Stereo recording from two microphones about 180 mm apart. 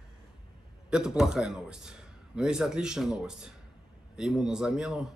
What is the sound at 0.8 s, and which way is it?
Speech, 5° right (ahead or behind).